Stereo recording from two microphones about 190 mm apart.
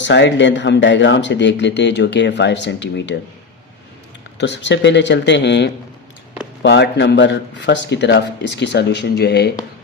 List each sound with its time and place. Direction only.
0.0 s speech: 65° left (ahead or behind)
4.4 s speech: 70° left (ahead or behind)